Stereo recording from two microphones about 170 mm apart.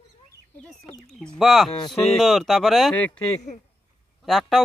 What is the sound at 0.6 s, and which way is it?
Speech, 5° left (ahead or behind).